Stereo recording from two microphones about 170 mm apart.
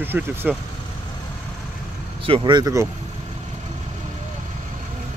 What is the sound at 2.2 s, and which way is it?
Speech, 30° right (ahead or behind).